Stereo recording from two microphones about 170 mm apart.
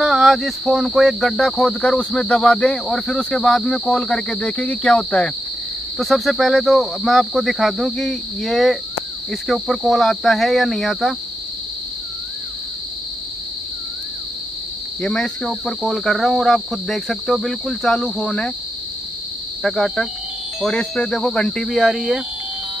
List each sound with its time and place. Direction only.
0.0 s speech: centre (ahead or behind)
15.0 s speech: 5° left (ahead or behind)
19.6 s speech: centre (ahead or behind)